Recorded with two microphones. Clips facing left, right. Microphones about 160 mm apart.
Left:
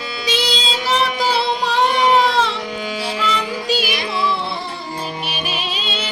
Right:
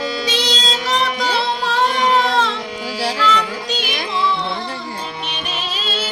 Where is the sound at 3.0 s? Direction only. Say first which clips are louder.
Right 6 dB; 80° right.